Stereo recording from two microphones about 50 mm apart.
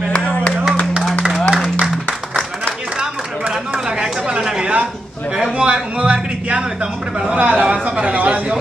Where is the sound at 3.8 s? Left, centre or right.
Centre.